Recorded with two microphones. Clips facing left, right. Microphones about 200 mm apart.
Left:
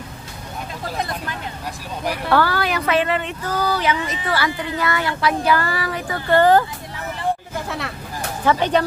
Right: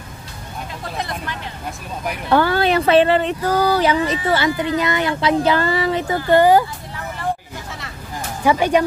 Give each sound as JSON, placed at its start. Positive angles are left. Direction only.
{"t": 2.2, "sound": "speech", "side_deg": -25}
{"t": 8.5, "sound": "speech", "side_deg": -10}